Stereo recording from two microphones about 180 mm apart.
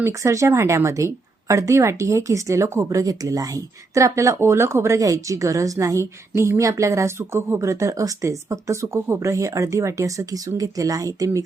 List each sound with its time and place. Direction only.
0.0 s speech: 15° right (ahead or behind)